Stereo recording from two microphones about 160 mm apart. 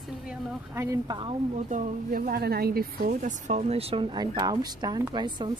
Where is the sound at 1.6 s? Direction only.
50° right (ahead or behind); by 5.5 s 25° right (ahead or behind).